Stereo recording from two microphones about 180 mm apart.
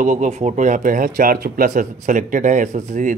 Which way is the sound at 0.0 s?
45° right (ahead or behind).